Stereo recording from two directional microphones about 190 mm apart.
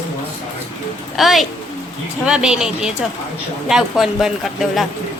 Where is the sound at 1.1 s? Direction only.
Centre (ahead or behind).